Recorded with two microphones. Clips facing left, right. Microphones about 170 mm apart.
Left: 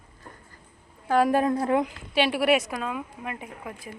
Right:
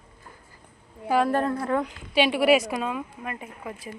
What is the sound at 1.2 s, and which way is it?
Speech, 10° left (ahead or behind).